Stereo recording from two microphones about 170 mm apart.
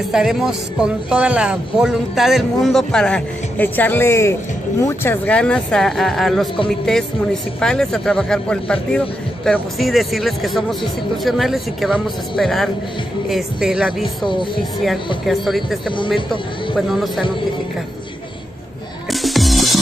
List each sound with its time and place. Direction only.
0.1 s speech: centre (ahead or behind)
7.6 s speech: 5° left (ahead or behind)
14.2 s speech: 30° left (ahead or behind)
15.2 s speech: centre (ahead or behind)
19.2 s music: centre (ahead or behind)